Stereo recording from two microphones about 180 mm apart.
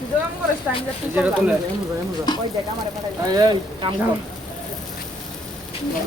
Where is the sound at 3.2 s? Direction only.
20° right (ahead or behind).